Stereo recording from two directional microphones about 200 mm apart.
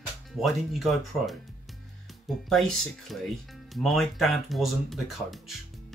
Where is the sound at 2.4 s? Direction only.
Centre (ahead or behind).